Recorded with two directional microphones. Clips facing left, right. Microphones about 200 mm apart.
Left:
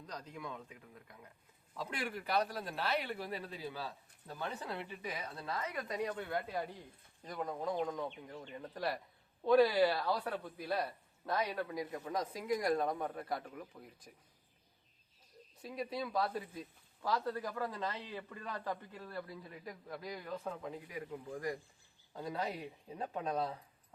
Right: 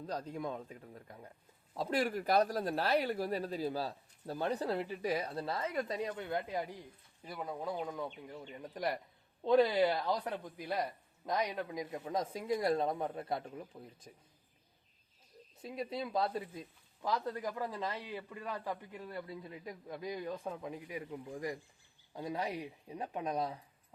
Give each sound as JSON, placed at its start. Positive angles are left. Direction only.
{"t": 0.0, "sound": "speech", "side_deg": -30}
{"t": 7.3, "sound": "speech", "side_deg": -5}
{"t": 8.4, "sound": "a man's voice", "side_deg": -15}
{"t": 15.6, "sound": "speech", "side_deg": -25}
{"t": 22.2, "sound": "speech", "side_deg": -15}